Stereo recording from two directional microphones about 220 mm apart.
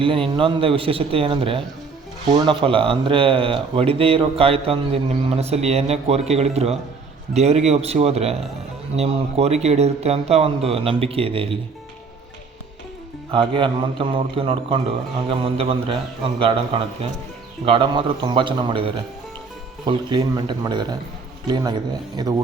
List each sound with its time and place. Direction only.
0.0 s speech: 25° right (ahead or behind)
13.3 s speech: 25° right (ahead or behind)